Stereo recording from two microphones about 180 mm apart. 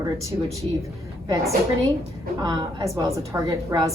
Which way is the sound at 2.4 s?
20° right (ahead or behind).